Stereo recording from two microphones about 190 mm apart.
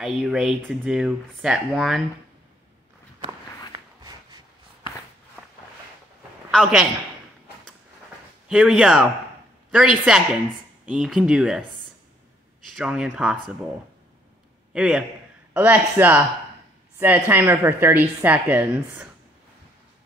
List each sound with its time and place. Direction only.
0.0 s speech: centre (ahead or behind)
3.7 s a sound: 20° right (ahead or behind)
6.5 s speech: centre (ahead or behind)
8.5 s speech: 5° right (ahead or behind)
12.7 s speech: 5° right (ahead or behind)
14.7 s a man's voice: 5° right (ahead or behind)